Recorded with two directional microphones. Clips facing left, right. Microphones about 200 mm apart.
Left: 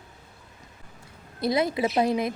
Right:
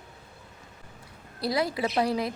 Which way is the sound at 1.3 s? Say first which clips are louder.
Left 3 dB; 20° left (ahead or behind).